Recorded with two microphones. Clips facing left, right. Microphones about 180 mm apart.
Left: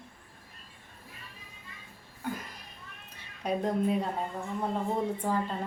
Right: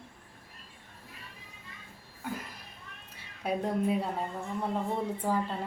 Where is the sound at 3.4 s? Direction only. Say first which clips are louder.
Left 1 dB; 10° right (ahead or behind).